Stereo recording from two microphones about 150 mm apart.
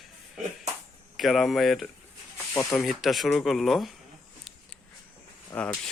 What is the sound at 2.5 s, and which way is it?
Speech, 15° left (ahead or behind).